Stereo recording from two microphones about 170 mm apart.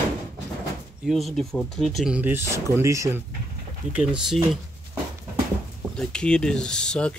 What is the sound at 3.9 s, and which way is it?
Speech, 5° right (ahead or behind).